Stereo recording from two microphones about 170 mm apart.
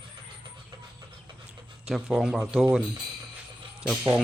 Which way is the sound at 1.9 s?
5° right (ahead or behind).